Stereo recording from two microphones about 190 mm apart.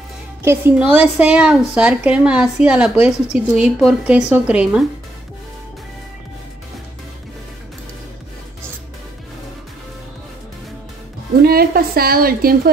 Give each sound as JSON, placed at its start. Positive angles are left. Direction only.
{"t": 0.4, "sound": "a woman's voice", "side_deg": -10}
{"t": 11.4, "sound": "a woman's voice", "side_deg": -50}